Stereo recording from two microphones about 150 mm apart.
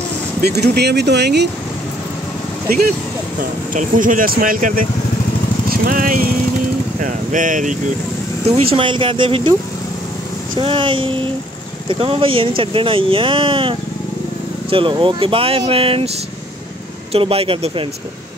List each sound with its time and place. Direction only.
0.5 s speech: 90° right
3.7 s speech: 60° right (ahead or behind)
7.0 s a sound: 60° right (ahead or behind)
8.5 s speech: 40° right (ahead or behind)
17.1 s speech: 40° right (ahead or behind)